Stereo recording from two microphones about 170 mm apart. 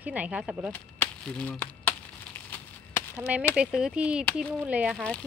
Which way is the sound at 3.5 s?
5° right (ahead or behind).